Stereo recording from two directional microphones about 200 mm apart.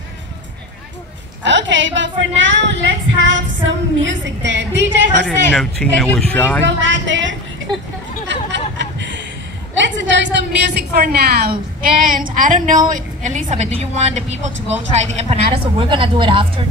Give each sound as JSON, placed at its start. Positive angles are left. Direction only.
{"t": 1.4, "sound": "speech", "side_deg": -65}
{"t": 5.2, "sound": "a man's voice", "side_deg": 5}
{"t": 6.8, "sound": "a woman's voice", "side_deg": -65}
{"t": 8.3, "sound": "a sound", "side_deg": -60}
{"t": 9.8, "sound": "a woman's voice", "side_deg": -65}